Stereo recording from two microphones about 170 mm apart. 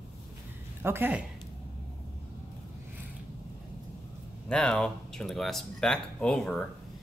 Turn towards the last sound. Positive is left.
turn(degrees=5)  # may be behind; listen again after turning